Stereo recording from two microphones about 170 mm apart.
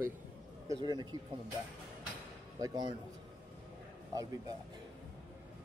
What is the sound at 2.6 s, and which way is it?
Speech, 25° right (ahead or behind).